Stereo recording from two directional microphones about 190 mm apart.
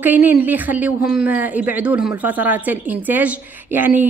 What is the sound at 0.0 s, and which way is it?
A woman's voice, 10° right (ahead or behind).